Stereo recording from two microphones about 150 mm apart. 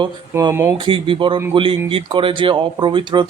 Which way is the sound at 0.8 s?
35° right (ahead or behind).